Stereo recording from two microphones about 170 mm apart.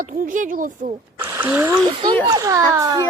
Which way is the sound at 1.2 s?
15° right (ahead or behind).